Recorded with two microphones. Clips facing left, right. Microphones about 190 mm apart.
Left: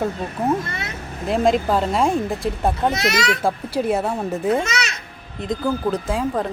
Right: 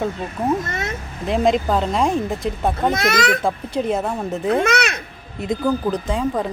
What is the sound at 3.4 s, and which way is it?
Speech, 5° left (ahead or behind).